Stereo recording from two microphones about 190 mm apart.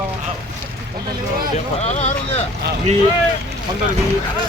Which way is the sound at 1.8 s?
35° left (ahead or behind).